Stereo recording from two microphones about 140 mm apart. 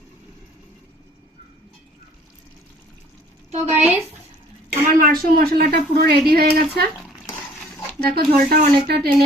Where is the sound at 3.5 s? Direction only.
50° right (ahead or behind).